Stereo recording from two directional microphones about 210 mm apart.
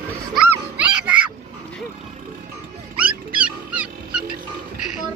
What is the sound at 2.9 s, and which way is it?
Dog, 5° right (ahead or behind).